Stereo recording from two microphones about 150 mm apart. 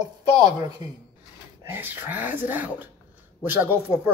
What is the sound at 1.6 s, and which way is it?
Speech, 15° right (ahead or behind).